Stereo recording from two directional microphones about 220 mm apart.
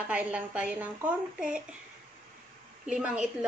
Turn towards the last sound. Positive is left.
turn(degrees=-5)  # may be behind; listen again after turning